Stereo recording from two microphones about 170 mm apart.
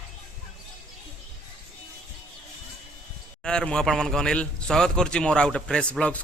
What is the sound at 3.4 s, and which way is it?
A man's voice, 5° left (ahead or behind).